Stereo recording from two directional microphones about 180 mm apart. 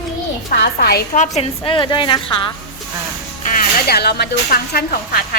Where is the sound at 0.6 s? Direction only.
60° left (ahead or behind).